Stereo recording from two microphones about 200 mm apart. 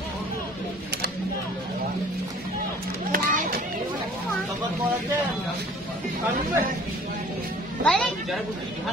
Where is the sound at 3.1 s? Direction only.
45° right (ahead or behind).